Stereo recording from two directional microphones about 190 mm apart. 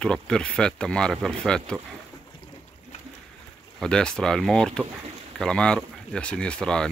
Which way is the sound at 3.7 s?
5° left (ahead or behind).